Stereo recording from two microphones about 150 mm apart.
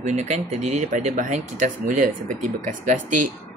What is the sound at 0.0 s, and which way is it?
Speech, 50° right (ahead or behind).